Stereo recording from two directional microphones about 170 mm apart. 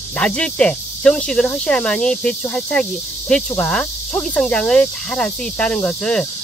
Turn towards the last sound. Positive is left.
turn(degrees=5)  # may be behind; listen again after turning